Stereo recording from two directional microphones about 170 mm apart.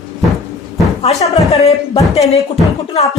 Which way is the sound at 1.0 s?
40° left (ahead or behind).